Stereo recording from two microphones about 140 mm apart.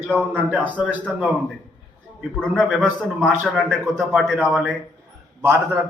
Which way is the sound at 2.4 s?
5° left (ahead or behind).